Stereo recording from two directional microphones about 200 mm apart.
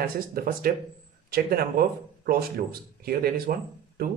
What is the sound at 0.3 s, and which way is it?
A man's voice, 45° right (ahead or behind).